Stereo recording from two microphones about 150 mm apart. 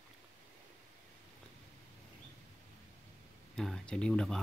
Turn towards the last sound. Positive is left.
turn(degrees=5)  # may be behind; listen again after turning